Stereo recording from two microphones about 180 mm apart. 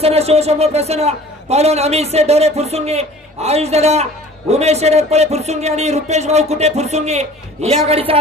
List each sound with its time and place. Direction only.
0.0 s a man's voice: 35° right (ahead or behind)